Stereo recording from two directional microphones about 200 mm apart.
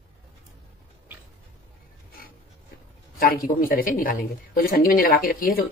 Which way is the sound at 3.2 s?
45° left (ahead or behind).